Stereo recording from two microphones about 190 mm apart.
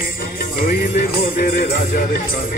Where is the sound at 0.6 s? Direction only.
50° left (ahead or behind).